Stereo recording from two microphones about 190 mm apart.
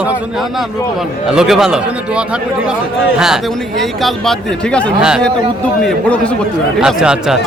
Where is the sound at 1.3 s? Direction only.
5° right (ahead or behind).